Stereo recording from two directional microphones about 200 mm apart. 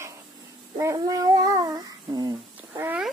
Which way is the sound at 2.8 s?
5° right (ahead or behind).